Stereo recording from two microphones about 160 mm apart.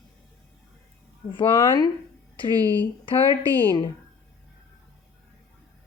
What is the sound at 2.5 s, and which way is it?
Speech, 20° right (ahead or behind).